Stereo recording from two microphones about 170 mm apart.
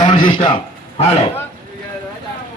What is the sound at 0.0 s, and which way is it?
Speech, 25° left (ahead or behind).